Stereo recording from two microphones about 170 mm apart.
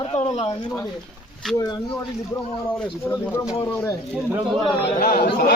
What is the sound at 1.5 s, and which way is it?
Speech, 25° left (ahead or behind).